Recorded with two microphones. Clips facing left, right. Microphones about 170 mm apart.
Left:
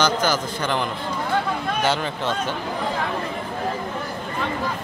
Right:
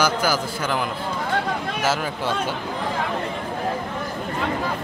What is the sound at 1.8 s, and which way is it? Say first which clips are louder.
Speech: even; 5° right (ahead or behind).